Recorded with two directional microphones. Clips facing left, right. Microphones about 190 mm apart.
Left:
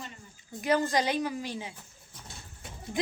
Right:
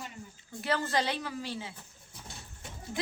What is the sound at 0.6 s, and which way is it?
A woman's voice, 15° left (ahead or behind).